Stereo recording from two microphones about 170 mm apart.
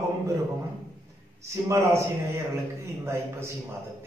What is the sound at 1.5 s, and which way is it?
A man's voice, 15° right (ahead or behind).